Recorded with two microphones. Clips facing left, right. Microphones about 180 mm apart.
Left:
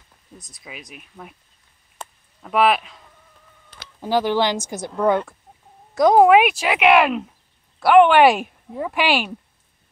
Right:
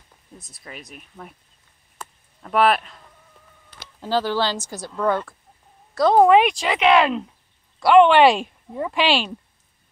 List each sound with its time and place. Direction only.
0.4 s speech: 5° right (ahead or behind)
2.4 s speech: centre (ahead or behind)
4.0 s speech: 15° left (ahead or behind)